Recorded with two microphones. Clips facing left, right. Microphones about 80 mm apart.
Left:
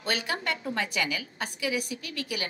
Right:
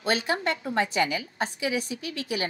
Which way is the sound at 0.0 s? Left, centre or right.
Right.